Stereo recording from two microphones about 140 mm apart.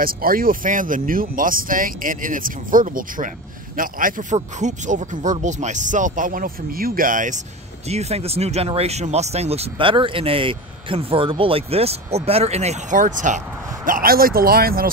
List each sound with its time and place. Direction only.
0.0 s speech: 90° right; by 7.3 s 70° right (ahead or behind)
7.9 s speech: 50° right (ahead or behind)
13.0 s speech: 65° right (ahead or behind)
13.8 s speech: 85° right